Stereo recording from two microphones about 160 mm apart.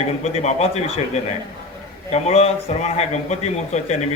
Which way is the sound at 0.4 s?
40° left (ahead or behind).